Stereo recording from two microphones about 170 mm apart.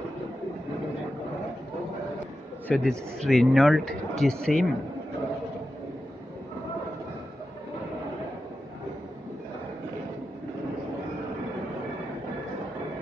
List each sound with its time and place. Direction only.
2.7 s speech: 5° left (ahead or behind)